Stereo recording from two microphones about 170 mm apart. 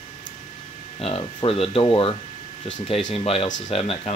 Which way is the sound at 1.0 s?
35° left (ahead or behind).